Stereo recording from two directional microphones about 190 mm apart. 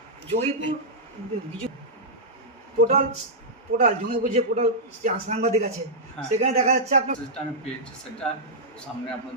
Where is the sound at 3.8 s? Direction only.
40° right (ahead or behind).